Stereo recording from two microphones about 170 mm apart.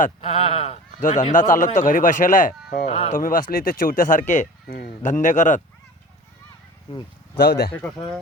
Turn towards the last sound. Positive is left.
turn(degrees=70)  # may be behind; listen again after turning